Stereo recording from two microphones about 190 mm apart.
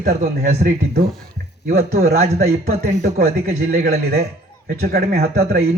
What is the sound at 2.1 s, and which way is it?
Speech, 35° right (ahead or behind).